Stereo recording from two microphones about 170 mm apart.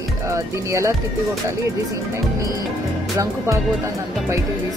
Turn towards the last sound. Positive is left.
turn(degrees=-15)  # may be behind; listen again after turning